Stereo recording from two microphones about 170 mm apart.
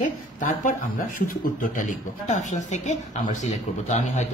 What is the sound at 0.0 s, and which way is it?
Speech, 50° left (ahead or behind).